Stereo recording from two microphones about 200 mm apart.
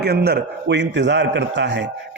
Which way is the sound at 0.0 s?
55° right (ahead or behind).